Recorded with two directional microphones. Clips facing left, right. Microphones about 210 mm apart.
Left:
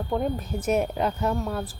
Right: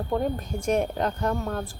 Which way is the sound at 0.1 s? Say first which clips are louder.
Even; 5° left (ahead or behind).